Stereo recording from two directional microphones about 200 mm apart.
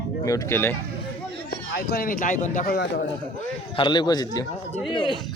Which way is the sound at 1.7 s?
50° left (ahead or behind).